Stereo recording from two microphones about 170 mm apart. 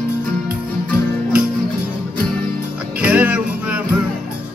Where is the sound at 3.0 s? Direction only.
10° right (ahead or behind).